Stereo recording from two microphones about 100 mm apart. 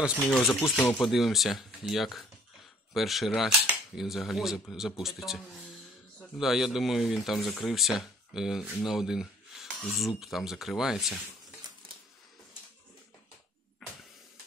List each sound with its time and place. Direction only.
0.4 s speech: 20° left (ahead or behind)
1.0 s speech: centre (ahead or behind)
13.8 s vehicle: centre (ahead or behind)